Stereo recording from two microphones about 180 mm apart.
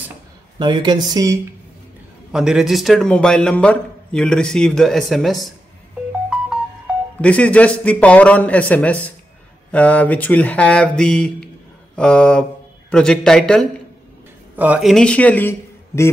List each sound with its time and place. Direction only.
0.6 s speech: 25° right (ahead or behind)
2.3 s a man's voice: 5° right (ahead or behind)
7.2 s a man's voice: 5° left (ahead or behind)